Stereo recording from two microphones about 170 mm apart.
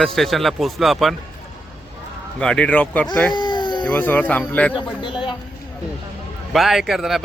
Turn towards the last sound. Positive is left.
turn(degrees=0)  # may be behind; listen again after turning